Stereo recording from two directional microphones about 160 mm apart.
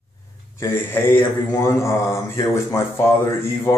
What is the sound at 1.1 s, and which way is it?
Speech, 15° left (ahead or behind).